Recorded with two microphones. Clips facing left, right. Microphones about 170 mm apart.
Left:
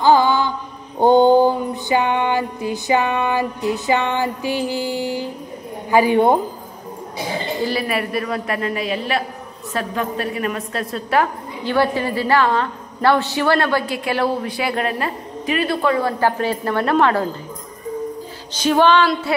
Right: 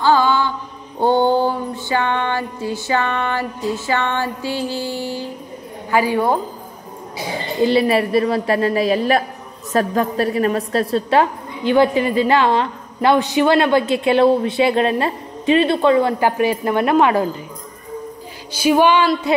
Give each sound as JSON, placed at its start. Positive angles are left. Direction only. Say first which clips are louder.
{"t": 0.0, "sound": "mantra", "louder": "left 1 dB", "side_deg": 15}
{"t": 0.9, "sound": "a sound", "louder": "left 4 dB", "side_deg": 15}
{"t": 5.9, "sound": "a woman's voice", "louder": "left 3 dB", "side_deg": 20}
{"t": 7.6, "sound": "a woman's voice", "louder": "right 9 dB", "side_deg": -25}
{"t": 18.5, "sound": "music", "louder": "right 1 dB", "side_deg": -10}